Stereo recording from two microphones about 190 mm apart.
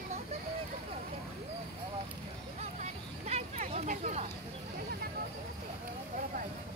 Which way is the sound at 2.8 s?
35° right (ahead or behind).